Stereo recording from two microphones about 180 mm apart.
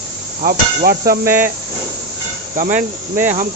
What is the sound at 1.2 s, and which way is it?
Speech, 10° right (ahead or behind).